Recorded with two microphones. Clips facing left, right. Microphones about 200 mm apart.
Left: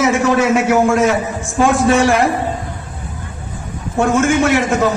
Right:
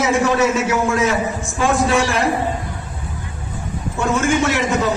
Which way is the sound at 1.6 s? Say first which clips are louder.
Left 5 dB; 60° left (ahead or behind).